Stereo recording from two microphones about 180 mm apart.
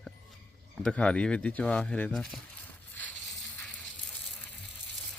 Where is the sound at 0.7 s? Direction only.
5° left (ahead or behind).